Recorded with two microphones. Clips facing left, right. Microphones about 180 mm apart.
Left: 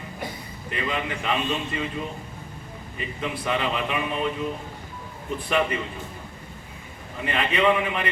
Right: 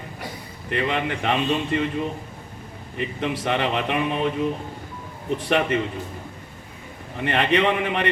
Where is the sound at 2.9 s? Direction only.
65° right (ahead or behind).